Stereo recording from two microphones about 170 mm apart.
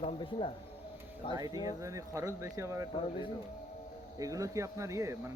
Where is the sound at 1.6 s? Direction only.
20° right (ahead or behind).